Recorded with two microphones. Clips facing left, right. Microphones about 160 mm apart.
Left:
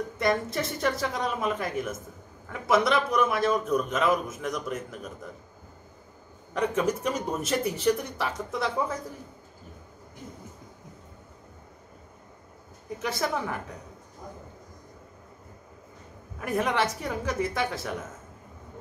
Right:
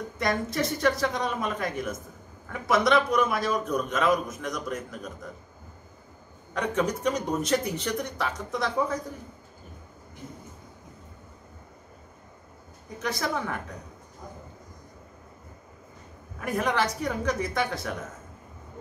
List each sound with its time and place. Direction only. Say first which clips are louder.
0.2 s a man's voice: even; centre (ahead or behind)
6.5 s a man's voice: left 1 dB; 5° left (ahead or behind)
13.0 s a man's voice: even; 5° left (ahead or behind)
16.3 s a man's voice: even; centre (ahead or behind)